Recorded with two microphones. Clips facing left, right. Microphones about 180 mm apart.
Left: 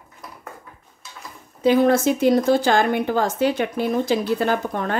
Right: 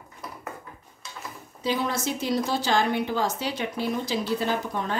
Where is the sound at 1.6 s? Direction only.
55° left (ahead or behind).